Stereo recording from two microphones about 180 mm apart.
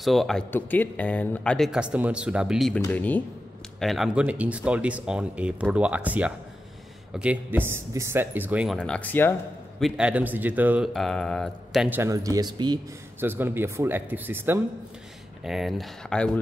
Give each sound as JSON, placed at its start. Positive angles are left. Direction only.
{"t": 0.0, "sound": "speech", "side_deg": 0}
{"t": 2.7, "sound": "speech", "side_deg": 10}
{"t": 9.8, "sound": "speech", "side_deg": 0}
{"t": 10.9, "sound": "speech", "side_deg": 0}
{"t": 12.0, "sound": "speech", "side_deg": -20}
{"t": 13.2, "sound": "speech", "side_deg": -10}
{"t": 15.4, "sound": "speech", "side_deg": 0}